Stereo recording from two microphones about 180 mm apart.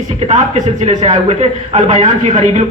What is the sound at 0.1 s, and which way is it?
Speech, 40° right (ahead or behind).